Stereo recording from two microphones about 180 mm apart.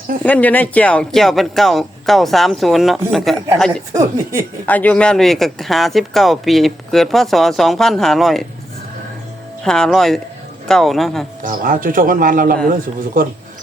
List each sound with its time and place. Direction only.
0.3 s speech: 10° left (ahead or behind)
3.9 s speech: 15° right (ahead or behind)
4.6 s speech: 10° left (ahead or behind)
9.6 s speech: 5° left (ahead or behind)
11.4 s speech: 50° right (ahead or behind)